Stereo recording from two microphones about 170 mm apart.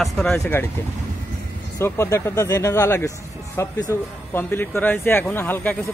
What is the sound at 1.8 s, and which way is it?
Speech, 15° left (ahead or behind).